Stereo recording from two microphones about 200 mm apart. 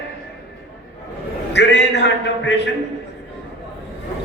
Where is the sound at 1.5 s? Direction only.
60° left (ahead or behind).